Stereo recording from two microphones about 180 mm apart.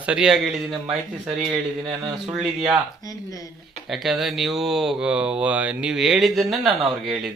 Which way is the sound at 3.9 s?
Centre (ahead or behind).